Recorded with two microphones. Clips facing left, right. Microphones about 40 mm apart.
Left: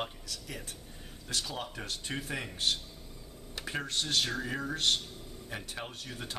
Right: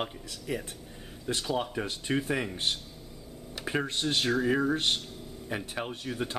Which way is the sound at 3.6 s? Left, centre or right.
Centre.